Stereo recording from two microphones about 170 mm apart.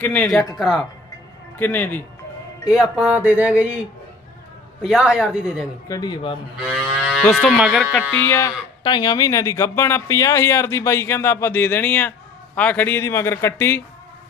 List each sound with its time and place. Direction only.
0.0 s speech: 10° left (ahead or behind)
0.6 s a man's voice: centre (ahead or behind)
1.5 s speech: 10° left (ahead or behind)
2.9 s a sound: 10° right (ahead or behind)
4.8 s a man's voice: 5° right (ahead or behind)
5.9 s speech: 25° left (ahead or behind)
6.7 s a man's voice: centre (ahead or behind)
8.1 s speech: 15° left (ahead or behind)